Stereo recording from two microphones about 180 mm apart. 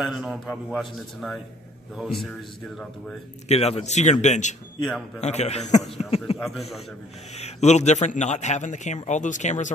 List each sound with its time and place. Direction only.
0.0 s a man's voice: 5° right (ahead or behind)
3.4 s a man's voice: 35° left (ahead or behind)
6.3 s a man's voice: centre (ahead or behind)
7.3 s a man's voice: 40° left (ahead or behind)